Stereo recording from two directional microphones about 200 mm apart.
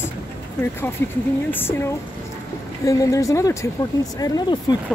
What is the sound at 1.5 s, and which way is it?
Speech, 10° left (ahead or behind).